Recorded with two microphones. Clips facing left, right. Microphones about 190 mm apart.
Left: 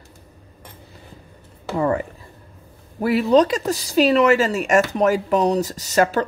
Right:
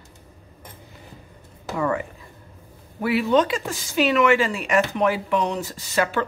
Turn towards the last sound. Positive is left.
turn(degrees=40)  # may be behind; listen again after turning